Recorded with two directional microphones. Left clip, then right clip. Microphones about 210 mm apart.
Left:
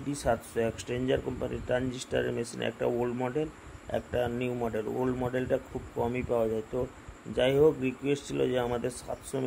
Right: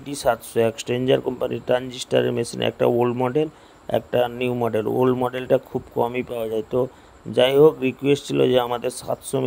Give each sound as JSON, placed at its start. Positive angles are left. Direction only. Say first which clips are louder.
{"t": 0.1, "sound": "a man's voice", "louder": "right 9 dB", "side_deg": -40}